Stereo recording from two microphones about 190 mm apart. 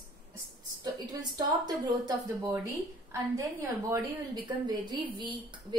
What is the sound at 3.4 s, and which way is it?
A woman's voice, 15° right (ahead or behind).